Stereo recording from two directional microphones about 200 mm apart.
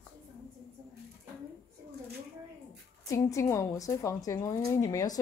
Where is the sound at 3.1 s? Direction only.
15° left (ahead or behind).